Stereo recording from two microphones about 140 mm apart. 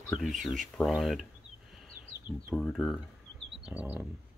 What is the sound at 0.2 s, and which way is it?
Speech, centre (ahead or behind).